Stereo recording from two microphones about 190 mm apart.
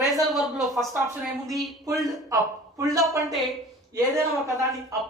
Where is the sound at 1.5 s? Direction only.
Centre (ahead or behind).